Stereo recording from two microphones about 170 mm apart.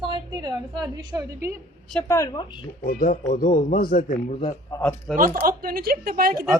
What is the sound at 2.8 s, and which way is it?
Speech, 55° left (ahead or behind).